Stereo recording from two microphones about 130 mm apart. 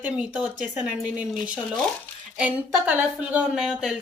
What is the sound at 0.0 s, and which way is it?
Speech, 10° right (ahead or behind).